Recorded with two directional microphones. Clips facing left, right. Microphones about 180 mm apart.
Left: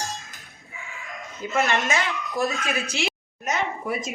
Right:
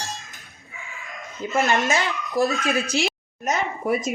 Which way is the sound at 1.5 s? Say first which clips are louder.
Right 2 dB; 35° right (ahead or behind).